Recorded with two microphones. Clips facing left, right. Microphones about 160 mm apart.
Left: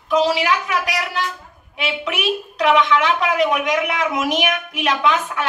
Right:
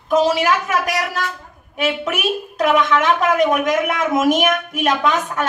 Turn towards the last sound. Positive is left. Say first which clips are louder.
# right 1 dB
turn(degrees=-45)  # may be behind; listen again after turning